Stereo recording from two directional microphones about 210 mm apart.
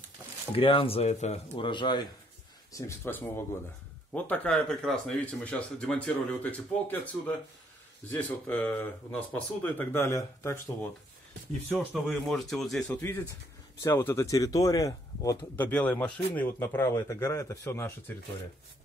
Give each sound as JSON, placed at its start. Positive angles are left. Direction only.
{"t": 0.6, "sound": "speech", "side_deg": 25}
{"t": 11.9, "sound": "speech", "side_deg": 0}